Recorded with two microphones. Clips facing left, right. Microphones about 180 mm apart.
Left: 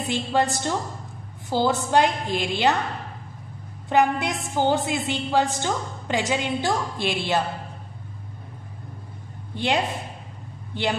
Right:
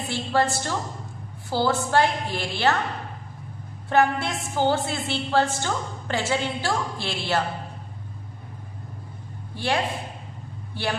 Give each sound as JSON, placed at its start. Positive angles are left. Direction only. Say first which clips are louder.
{"t": 0.0, "sound": "a woman's voice", "louder": "left 1 dB", "side_deg": 15}
{"t": 3.9, "sound": "a woman's voice", "louder": "left 1 dB", "side_deg": 15}
{"t": 9.6, "sound": "speech", "louder": "left 1 dB", "side_deg": 20}